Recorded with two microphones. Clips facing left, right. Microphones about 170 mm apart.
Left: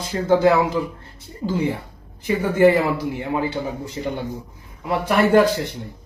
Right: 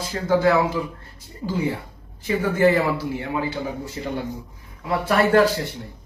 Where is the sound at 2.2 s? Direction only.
15° left (ahead or behind).